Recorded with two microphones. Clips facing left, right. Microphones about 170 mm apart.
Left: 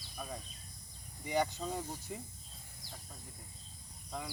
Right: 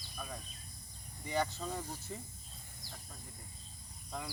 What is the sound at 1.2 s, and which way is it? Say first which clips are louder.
Speech: left 2 dB; 15° left (ahead or behind).